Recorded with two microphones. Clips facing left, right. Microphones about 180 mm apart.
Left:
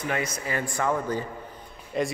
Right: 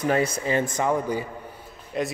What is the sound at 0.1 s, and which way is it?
Speech, 30° right (ahead or behind).